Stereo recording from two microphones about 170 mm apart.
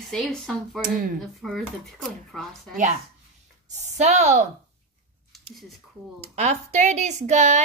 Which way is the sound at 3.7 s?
45° right (ahead or behind).